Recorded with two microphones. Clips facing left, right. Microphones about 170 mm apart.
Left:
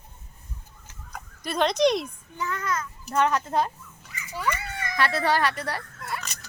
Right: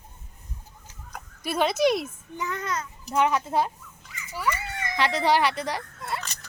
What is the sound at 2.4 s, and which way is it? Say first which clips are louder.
Speech: left 1 dB; 20° right (ahead or behind).